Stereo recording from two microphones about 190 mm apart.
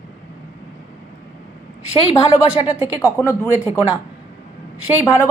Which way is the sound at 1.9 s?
30° left (ahead or behind).